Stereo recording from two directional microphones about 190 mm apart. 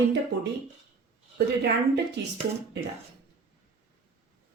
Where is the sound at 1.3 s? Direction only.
65° right (ahead or behind).